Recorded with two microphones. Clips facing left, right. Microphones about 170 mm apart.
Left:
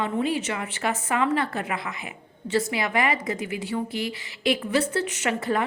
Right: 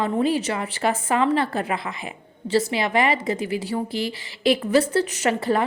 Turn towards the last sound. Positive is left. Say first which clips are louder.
# right 4 dB
turn(degrees=-35)  # may be behind; listen again after turning